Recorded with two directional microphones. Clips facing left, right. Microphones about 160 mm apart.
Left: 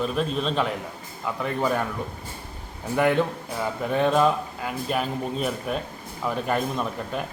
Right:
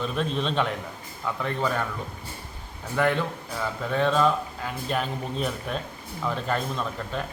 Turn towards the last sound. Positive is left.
turn(degrees=10)  # may be behind; listen again after turning